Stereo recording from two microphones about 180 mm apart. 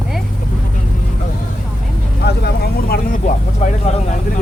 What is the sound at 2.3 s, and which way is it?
Vehicle, 60° left (ahead or behind).